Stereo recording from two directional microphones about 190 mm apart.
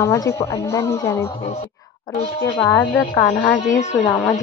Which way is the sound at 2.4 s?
15° left (ahead or behind).